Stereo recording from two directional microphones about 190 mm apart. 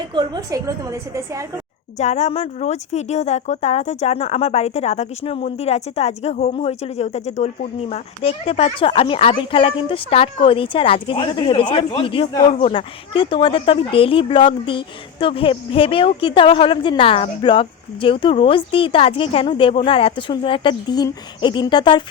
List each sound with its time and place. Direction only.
0.1 s a woman's voice: 20° right (ahead or behind)
2.0 s speech: 35° left (ahead or behind)